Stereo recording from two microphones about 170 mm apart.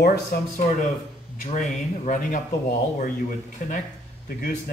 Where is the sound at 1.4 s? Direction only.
45° left (ahead or behind).